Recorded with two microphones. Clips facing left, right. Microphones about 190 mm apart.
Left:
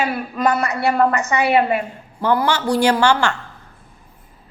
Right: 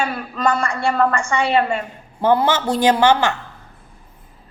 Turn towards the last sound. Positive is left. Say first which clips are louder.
# right 2 dB
turn(degrees=-15)  # may be behind; listen again after turning